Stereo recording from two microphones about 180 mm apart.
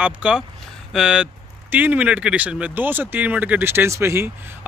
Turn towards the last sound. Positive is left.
turn(degrees=-15)  # may be behind; listen again after turning